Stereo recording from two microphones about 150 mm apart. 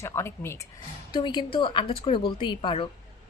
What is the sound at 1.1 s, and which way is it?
Speech, 30° left (ahead or behind).